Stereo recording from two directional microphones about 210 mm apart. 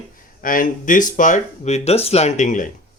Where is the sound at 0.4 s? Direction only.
40° left (ahead or behind).